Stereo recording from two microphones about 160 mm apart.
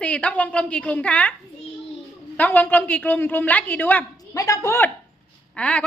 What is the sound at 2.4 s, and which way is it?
A woman's voice, 10° left (ahead or behind).